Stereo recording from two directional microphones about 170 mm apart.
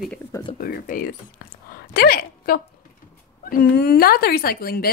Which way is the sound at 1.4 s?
60° left (ahead or behind).